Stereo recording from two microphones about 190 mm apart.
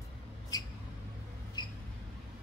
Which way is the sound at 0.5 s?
20° left (ahead or behind).